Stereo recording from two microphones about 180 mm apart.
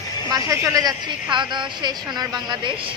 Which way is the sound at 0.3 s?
20° right (ahead or behind).